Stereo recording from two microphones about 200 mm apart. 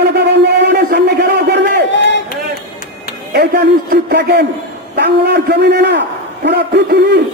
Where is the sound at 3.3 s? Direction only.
55° right (ahead or behind).